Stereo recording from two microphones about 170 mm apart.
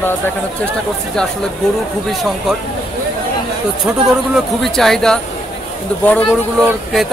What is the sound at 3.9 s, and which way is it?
Speech, 10° right (ahead or behind).